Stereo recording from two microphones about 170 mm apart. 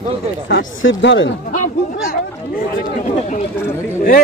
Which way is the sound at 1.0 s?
90° left.